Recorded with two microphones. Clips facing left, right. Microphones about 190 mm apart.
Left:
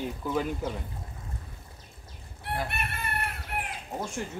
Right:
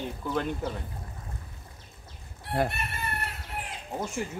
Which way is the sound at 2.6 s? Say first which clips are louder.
Right 1 dB; 60° left (ahead or behind).